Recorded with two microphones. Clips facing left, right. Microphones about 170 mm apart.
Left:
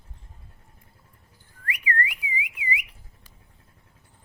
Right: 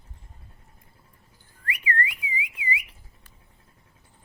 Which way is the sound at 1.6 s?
30° right (ahead or behind).